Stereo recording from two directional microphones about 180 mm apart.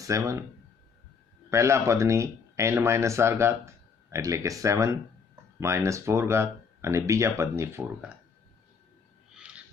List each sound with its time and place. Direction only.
0.0 s speech: 15° right (ahead or behind)
1.5 s speech: 15° right (ahead or behind)
9.3 s owl: 5° right (ahead or behind)